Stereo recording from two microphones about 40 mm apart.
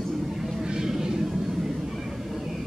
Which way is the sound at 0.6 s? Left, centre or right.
Centre.